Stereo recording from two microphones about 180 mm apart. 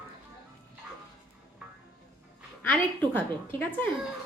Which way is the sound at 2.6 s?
10° left (ahead or behind).